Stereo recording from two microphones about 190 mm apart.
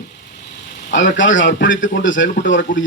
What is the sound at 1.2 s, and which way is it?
A man's voice, 80° left.